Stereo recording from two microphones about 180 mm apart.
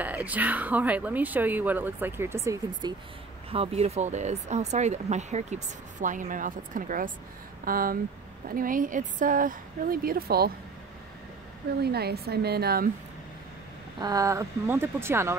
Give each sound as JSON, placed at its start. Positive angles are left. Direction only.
{"t": 0.0, "sound": "speech", "side_deg": -10}
{"t": 3.4, "sound": "speech", "side_deg": -30}
{"t": 11.8, "sound": "a woman's voice", "side_deg": -65}
{"t": 13.9, "sound": "speech", "side_deg": -20}